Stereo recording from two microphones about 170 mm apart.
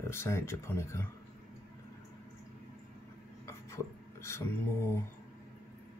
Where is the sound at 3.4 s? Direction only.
15° left (ahead or behind).